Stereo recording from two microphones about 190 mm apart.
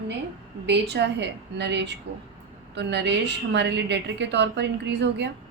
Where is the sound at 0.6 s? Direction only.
65° right (ahead or behind).